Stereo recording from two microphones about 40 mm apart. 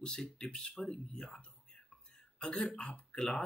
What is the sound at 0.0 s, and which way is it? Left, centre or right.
Speech, centre.